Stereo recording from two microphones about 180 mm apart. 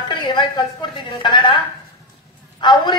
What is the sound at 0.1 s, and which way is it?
A man's voice, 25° left (ahead or behind).